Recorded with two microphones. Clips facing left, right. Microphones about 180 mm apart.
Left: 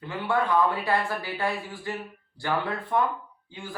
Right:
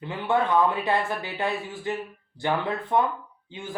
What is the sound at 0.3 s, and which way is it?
Speech, 20° right (ahead or behind).